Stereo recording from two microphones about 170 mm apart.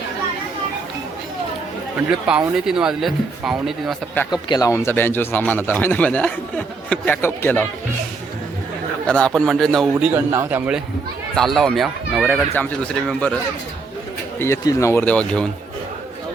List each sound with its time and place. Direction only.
2.0 s speech: 5° right (ahead or behind)
4.3 s a man's voice: 25° left (ahead or behind)
9.0 s speech: 5° left (ahead or behind)
10.2 s a man's voice: 15° right (ahead or behind)
11.3 s speech: centre (ahead or behind)
14.3 s a man's voice: 15° left (ahead or behind)